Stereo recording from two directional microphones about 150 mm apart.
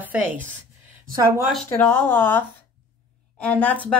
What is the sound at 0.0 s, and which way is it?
Speech, 10° right (ahead or behind).